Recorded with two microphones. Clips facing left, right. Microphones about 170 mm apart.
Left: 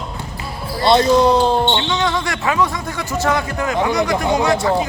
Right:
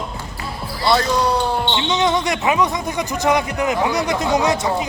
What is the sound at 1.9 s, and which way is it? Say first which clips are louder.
Speech: right 2 dB; 20° right (ahead or behind).